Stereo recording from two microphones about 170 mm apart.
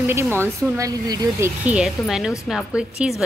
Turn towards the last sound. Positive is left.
turn(degrees=-5)  # may be behind; listen again after turning